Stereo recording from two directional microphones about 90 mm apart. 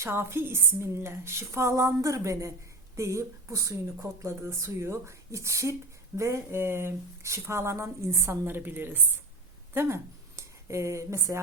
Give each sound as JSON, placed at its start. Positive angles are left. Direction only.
{"t": 0.0, "sound": "a woman's voice", "side_deg": -25}